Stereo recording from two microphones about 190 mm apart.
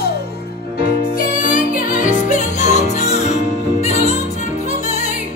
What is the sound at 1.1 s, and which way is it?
Music, 45° left (ahead or behind).